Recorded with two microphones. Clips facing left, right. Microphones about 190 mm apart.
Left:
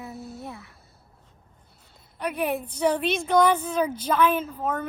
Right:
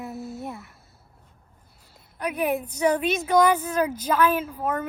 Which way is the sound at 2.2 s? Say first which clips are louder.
Right 2 dB; 10° right (ahead or behind).